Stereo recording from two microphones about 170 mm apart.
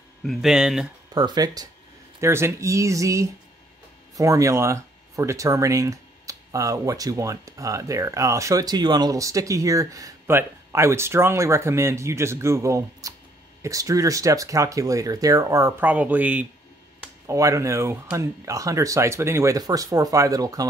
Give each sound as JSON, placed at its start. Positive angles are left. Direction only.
{"t": 0.2, "sound": "speech", "side_deg": 0}
{"t": 1.1, "sound": "speech", "side_deg": -25}